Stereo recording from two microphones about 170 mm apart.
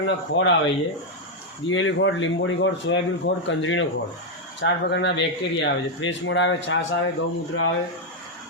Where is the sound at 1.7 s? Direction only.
90° left.